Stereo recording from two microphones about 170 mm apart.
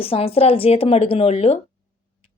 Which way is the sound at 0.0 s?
35° left (ahead or behind).